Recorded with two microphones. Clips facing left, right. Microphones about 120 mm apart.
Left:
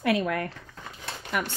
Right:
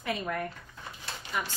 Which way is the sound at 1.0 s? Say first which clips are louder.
Left 5 dB; 65° left (ahead or behind).